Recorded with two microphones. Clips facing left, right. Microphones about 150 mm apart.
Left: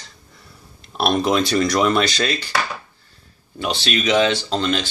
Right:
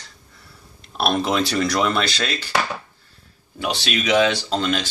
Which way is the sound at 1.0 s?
Centre (ahead or behind).